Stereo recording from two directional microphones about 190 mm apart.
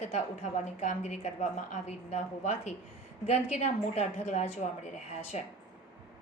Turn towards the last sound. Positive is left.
turn(degrees=35)  # may be behind; listen again after turning